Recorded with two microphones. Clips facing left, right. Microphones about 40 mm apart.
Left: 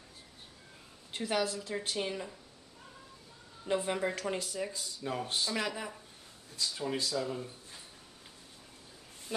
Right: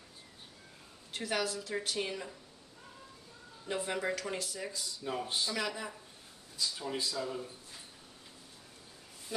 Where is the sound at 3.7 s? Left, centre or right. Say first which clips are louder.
Left 3 dB; centre.